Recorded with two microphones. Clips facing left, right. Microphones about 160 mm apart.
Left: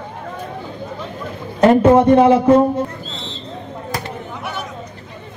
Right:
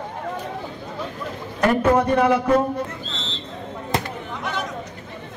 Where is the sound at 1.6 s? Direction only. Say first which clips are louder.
Left 7 dB; 25° left (ahead or behind).